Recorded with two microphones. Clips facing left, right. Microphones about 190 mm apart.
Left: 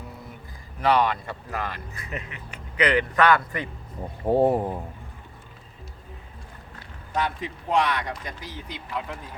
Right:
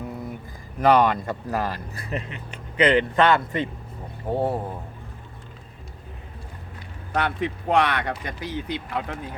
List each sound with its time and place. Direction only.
0.8 s speech: 45° right (ahead or behind); by 3.7 s 25° right (ahead or behind)
4.3 s speech: 20° left (ahead or behind)
7.1 s speech: 65° right (ahead or behind)